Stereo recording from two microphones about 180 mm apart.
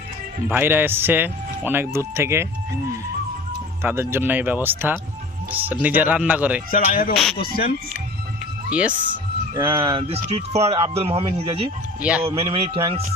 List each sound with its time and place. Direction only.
0.4 s speech: 10° right (ahead or behind)
3.8 s speech: 15° right (ahead or behind)
6.7 s speech: 50° left (ahead or behind)
8.7 s speech: 5° right (ahead or behind)
9.6 s speech: 25° right (ahead or behind)
12.0 s speech: 5° right (ahead or behind)
12.3 s speech: 30° right (ahead or behind)